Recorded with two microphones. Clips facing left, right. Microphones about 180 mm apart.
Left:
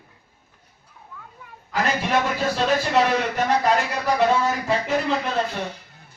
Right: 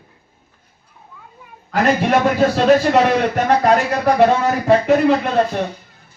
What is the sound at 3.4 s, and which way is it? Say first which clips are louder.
Speech: right 5 dB; 55° right (ahead or behind).